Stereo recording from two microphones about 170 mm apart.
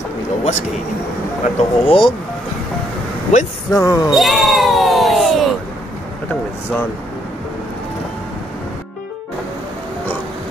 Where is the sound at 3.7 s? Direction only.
20° left (ahead or behind).